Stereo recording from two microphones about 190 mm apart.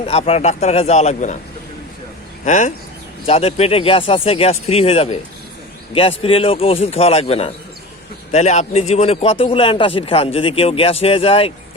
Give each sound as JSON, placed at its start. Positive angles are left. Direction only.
{"t": 0.0, "sound": "speech", "side_deg": 30}
{"t": 2.4, "sound": "speech", "side_deg": 40}